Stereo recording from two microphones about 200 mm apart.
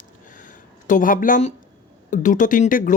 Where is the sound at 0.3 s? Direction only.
40° left (ahead or behind).